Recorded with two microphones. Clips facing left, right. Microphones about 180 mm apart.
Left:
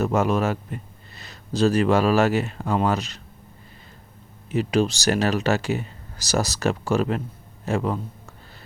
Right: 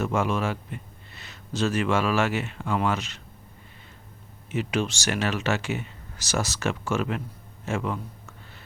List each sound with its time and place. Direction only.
0.0 s speech: 40° left (ahead or behind)
4.4 s speech: 35° left (ahead or behind)
7.6 s a sound: 35° left (ahead or behind)